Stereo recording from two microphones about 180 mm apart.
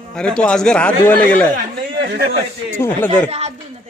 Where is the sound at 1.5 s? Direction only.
65° right (ahead or behind).